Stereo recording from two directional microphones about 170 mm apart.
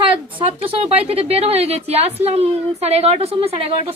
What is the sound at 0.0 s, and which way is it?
A woman's voice, 30° right (ahead or behind).